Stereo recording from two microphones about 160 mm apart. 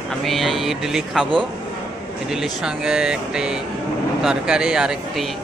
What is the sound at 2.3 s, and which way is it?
Speech, 5° right (ahead or behind).